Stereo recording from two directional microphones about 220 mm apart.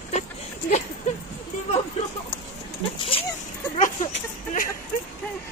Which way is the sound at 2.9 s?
25° left (ahead or behind).